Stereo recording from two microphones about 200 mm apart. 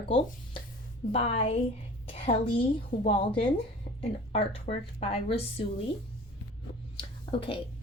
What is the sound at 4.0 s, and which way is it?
Speech, 30° left (ahead or behind).